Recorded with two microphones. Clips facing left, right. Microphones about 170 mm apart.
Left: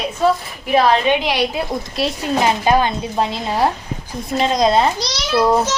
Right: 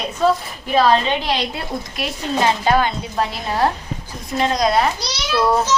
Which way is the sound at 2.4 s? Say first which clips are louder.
Left 1 dB; 15° left (ahead or behind).